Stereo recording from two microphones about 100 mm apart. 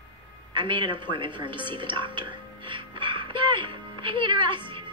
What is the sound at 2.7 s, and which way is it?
Music, 55° right (ahead or behind).